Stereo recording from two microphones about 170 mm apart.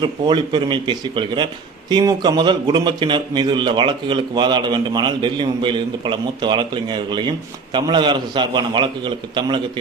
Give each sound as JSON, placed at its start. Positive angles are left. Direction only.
{"t": 0.0, "sound": "a man's voice", "side_deg": -25}